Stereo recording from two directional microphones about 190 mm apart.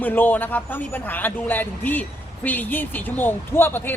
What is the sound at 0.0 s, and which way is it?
A man's voice, 10° left (ahead or behind).